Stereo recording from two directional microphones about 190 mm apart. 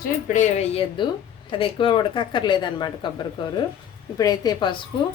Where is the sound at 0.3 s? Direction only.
40° left (ahead or behind); by 4.8 s 25° left (ahead or behind).